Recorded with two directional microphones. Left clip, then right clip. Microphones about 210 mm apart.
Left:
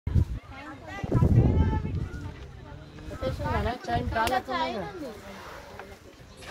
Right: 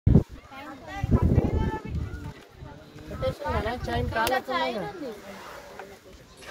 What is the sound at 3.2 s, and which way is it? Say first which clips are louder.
Speech: right 2 dB; 40° right (ahead or behind).